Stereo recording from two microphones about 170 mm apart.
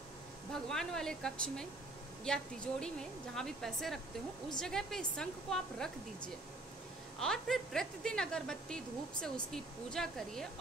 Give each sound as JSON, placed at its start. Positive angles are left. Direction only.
{"t": 0.5, "sound": "a woman's voice", "side_deg": 5}